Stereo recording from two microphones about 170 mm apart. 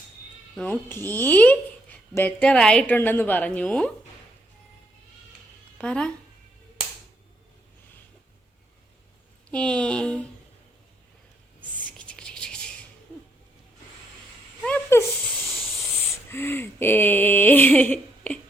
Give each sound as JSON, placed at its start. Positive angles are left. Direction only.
{"t": 0.5, "sound": "speech", "side_deg": 10}
{"t": 5.7, "sound": "speech", "side_deg": 5}
{"t": 9.5, "sound": "speech", "side_deg": 5}
{"t": 11.9, "sound": "music", "side_deg": 5}
{"t": 14.6, "sound": "a sound", "side_deg": 10}
{"t": 15.4, "sound": "hiss", "side_deg": 0}
{"t": 16.3, "sound": "speech", "side_deg": 15}